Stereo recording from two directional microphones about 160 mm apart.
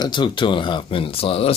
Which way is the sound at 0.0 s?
30° left (ahead or behind).